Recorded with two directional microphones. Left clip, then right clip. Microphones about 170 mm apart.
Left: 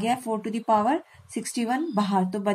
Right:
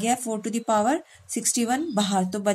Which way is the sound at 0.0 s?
40° right (ahead or behind).